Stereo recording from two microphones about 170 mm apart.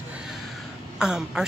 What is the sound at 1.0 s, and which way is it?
Speech, 5° right (ahead or behind).